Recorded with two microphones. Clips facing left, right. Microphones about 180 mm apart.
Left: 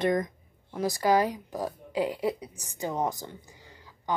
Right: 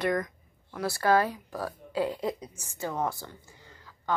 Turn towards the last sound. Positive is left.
turn(degrees=15)  # may be behind; listen again after turning